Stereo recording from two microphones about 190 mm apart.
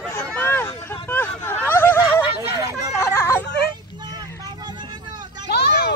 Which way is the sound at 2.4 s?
15° right (ahead or behind).